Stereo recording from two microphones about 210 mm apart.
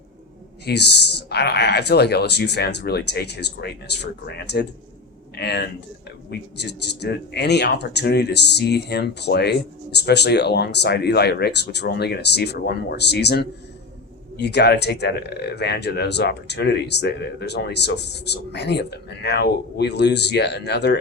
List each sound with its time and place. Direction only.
0.6 s speech: 50° left (ahead or behind)